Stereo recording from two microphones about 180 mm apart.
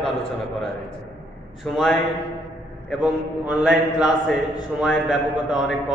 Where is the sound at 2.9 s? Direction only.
5° right (ahead or behind).